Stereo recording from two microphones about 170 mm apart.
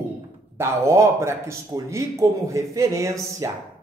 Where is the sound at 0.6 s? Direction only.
15° right (ahead or behind).